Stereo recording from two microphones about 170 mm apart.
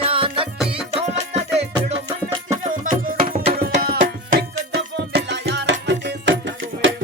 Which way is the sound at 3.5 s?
65° right (ahead or behind).